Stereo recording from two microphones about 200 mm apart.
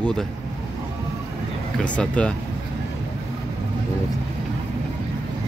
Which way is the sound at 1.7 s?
5° left (ahead or behind).